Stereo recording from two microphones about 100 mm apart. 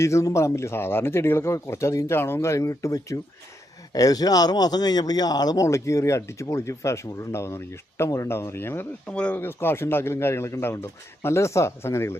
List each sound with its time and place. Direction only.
0.0 s speech: 30° left (ahead or behind)
9.0 s speech: 10° left (ahead or behind)